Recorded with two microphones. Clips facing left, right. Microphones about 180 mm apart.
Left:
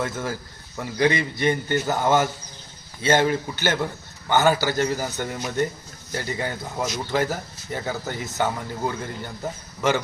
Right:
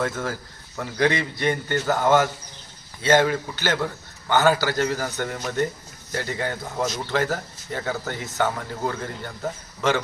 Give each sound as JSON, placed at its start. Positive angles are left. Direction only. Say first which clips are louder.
{"t": 0.0, "sound": "a man's voice", "louder": "right 1 dB", "side_deg": 15}